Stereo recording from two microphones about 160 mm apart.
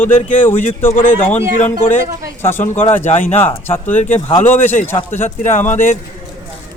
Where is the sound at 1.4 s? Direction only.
45° left (ahead or behind).